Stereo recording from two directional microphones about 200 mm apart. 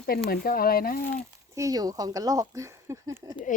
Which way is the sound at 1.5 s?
15° right (ahead or behind).